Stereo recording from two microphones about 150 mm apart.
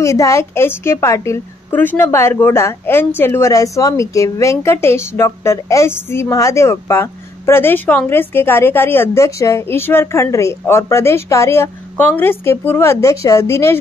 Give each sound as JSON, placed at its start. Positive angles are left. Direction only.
{"t": 0.0, "sound": "a woman's voice", "side_deg": 20}